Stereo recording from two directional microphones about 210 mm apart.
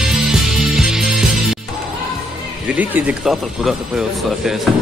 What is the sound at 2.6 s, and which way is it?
Speech, 5° right (ahead or behind).